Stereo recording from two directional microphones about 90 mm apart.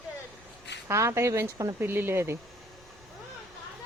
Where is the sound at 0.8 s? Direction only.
30° right (ahead or behind).